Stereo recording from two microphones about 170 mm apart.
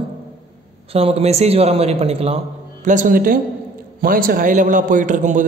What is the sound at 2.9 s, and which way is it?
A man's voice, 50° right (ahead or behind).